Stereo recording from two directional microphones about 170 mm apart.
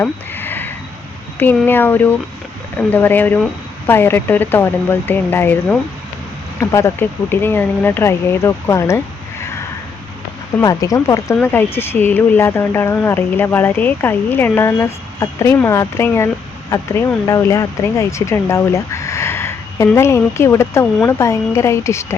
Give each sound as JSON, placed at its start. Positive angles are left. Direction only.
{"t": 0.0, "sound": "a sound", "side_deg": 10}
{"t": 1.4, "sound": "speech", "side_deg": 10}
{"t": 6.6, "sound": "speech", "side_deg": 15}
{"t": 10.6, "sound": "speech", "side_deg": 20}